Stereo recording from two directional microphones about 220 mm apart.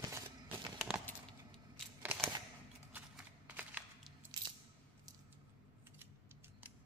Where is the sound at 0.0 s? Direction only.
15° right (ahead or behind).